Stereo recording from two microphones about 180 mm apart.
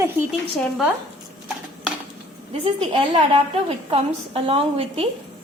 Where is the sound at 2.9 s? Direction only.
30° right (ahead or behind).